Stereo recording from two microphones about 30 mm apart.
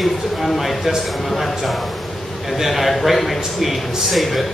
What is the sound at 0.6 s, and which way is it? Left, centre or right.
Speech, centre.